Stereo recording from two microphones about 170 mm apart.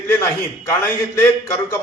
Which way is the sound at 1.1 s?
15° left (ahead or behind).